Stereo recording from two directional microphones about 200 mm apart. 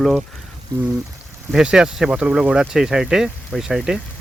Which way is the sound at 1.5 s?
5° right (ahead or behind).